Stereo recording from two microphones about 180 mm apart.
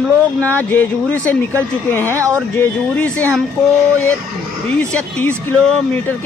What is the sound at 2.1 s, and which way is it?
Speech, 15° right (ahead or behind).